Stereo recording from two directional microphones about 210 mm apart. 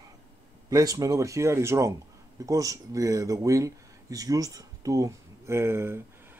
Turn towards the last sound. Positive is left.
turn(degrees=-10)  # may be behind; listen again after turning